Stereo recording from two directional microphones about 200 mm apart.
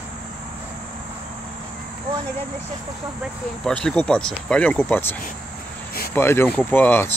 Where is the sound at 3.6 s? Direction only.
5° left (ahead or behind).